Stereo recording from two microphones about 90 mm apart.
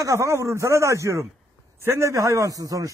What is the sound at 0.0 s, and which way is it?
A man's voice, 35° right (ahead or behind).